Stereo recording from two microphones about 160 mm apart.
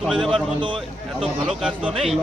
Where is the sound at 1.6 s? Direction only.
5° right (ahead or behind).